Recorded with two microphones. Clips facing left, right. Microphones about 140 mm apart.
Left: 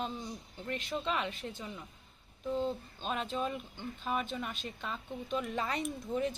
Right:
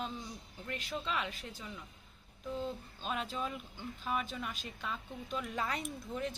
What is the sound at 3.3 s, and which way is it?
Speech, 25° left (ahead or behind).